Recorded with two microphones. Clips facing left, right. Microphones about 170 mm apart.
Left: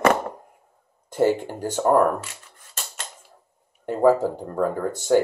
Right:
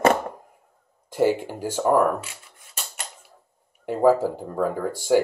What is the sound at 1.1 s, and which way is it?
Speech, 10° right (ahead or behind).